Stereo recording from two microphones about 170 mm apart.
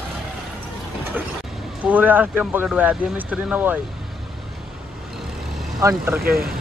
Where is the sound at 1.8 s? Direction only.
10° right (ahead or behind).